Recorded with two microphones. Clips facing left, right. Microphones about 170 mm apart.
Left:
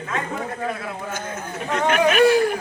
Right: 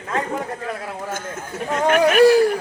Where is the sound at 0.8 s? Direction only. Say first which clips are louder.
Right 1 dB; 45° right (ahead or behind).